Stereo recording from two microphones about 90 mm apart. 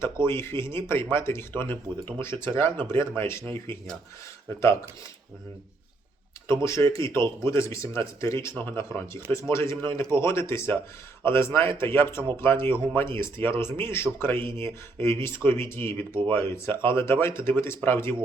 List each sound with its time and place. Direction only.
0.0 s speech: 30° left (ahead or behind)
6.9 s speech: 30° left (ahead or behind)